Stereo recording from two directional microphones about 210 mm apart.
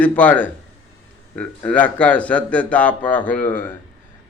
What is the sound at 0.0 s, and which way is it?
Speech, 5° left (ahead or behind).